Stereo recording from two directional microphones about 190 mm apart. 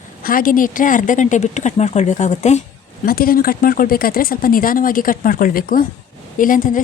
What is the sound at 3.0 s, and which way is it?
A woman's voice, 50° left (ahead or behind).